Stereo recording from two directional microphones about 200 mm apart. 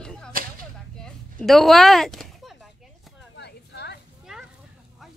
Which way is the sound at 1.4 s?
Centre (ahead or behind).